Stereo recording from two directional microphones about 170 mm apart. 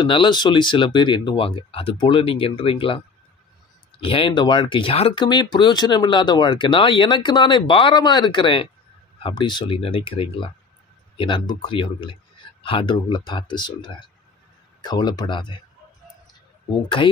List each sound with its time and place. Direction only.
0.0 s speech: 30° left (ahead or behind)
4.0 s speech: 30° left (ahead or behind)
17.0 s speech: 30° left (ahead or behind)